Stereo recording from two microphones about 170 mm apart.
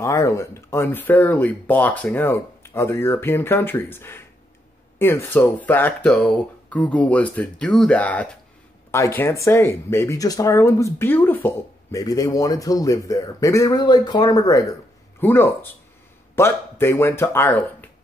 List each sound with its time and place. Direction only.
0.0 s speech: 15° left (ahead or behind)